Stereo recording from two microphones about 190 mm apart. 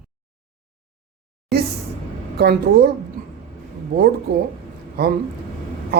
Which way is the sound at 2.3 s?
55° right (ahead or behind).